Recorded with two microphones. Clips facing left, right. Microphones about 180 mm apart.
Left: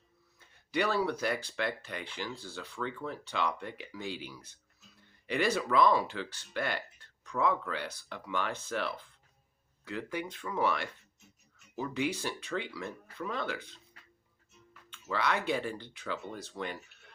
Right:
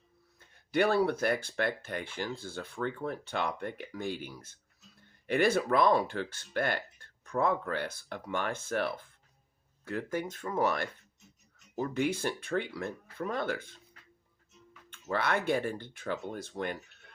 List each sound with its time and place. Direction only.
0.3 s speech: 50° right (ahead or behind)
10.1 s speech: 45° right (ahead or behind)
15.1 s speech: 50° right (ahead or behind)